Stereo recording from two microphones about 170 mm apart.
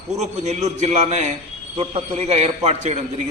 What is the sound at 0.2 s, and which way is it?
A man's voice, 40° right (ahead or behind).